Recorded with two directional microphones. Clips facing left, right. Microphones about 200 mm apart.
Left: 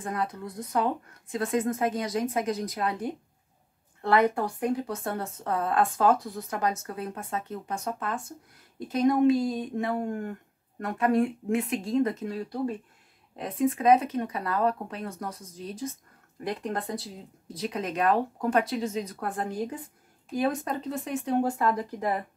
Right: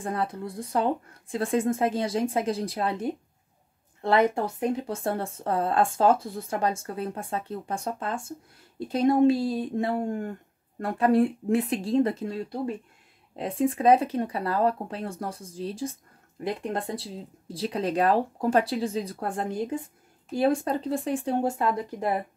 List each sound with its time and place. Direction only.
0.0 s a woman's voice: 30° right (ahead or behind)
4.1 s a woman's voice: 25° right (ahead or behind)
13.4 s speech: 30° right (ahead or behind)